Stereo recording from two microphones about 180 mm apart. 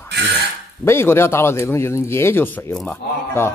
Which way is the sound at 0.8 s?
15° left (ahead or behind).